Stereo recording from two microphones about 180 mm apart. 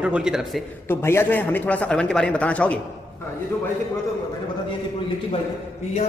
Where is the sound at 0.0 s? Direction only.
5° right (ahead or behind).